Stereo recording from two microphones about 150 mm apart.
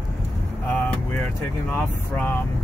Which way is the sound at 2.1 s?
10° left (ahead or behind).